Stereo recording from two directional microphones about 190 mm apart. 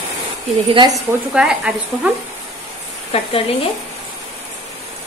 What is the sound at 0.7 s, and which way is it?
Speech, 25° right (ahead or behind).